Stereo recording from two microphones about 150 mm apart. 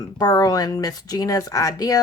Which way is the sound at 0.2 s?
25° left (ahead or behind).